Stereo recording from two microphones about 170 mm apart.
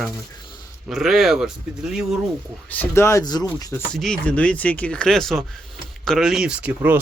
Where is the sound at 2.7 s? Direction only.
10° left (ahead or behind).